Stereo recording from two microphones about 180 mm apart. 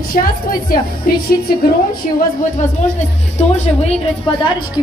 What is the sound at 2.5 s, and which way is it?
A woman's voice, 40° left (ahead or behind).